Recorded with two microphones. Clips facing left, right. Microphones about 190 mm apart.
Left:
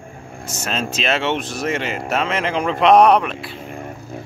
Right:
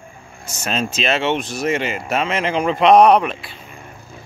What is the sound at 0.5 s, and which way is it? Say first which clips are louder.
Speech: right 2 dB; centre (ahead or behind).